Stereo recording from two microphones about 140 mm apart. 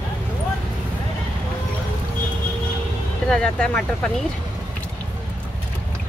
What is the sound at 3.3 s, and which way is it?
Speech, 5° left (ahead or behind).